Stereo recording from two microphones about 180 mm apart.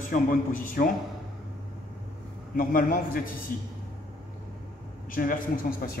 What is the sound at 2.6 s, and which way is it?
Speech, 50° left (ahead or behind).